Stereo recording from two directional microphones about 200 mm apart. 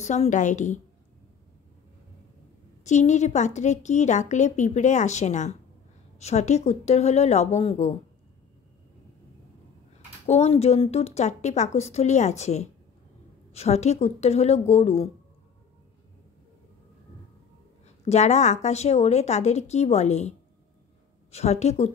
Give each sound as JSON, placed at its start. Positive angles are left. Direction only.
{"t": 0.0, "sound": "a woman's voice", "side_deg": 35}
{"t": 2.8, "sound": "a woman's voice", "side_deg": 35}
{"t": 10.2, "sound": "a woman's voice", "side_deg": 35}
{"t": 18.0, "sound": "a woman's voice", "side_deg": 35}